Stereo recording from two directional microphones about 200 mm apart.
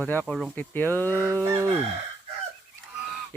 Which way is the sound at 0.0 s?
5° left (ahead or behind).